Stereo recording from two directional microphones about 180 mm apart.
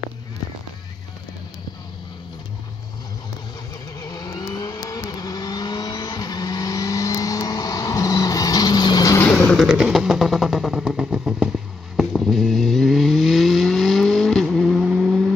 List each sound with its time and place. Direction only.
4.0 s vehicle: 20° left (ahead or behind)
9.5 s vehicle: centre (ahead or behind)
12.0 s a sound: centre (ahead or behind)